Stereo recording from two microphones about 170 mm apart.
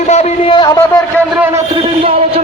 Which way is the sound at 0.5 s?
25° left (ahead or behind).